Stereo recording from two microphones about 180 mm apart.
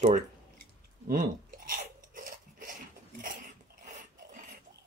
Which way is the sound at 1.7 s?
50° right (ahead or behind).